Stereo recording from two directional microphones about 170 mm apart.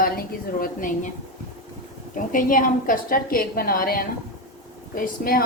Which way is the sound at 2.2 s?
50° left (ahead or behind).